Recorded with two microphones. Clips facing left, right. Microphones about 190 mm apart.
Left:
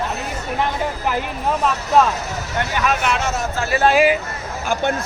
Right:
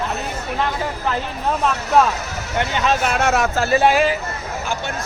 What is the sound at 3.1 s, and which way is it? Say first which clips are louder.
Speech: right 3 dB; 55° right (ahead or behind).